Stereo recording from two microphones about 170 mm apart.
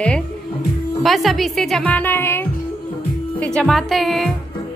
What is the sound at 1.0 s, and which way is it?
A woman's voice, centre (ahead or behind).